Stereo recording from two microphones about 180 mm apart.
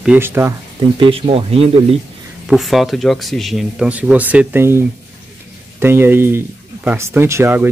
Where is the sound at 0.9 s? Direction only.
30° right (ahead or behind).